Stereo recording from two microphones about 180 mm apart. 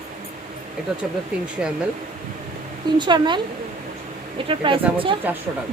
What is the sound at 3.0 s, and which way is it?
Speech, 25° right (ahead or behind).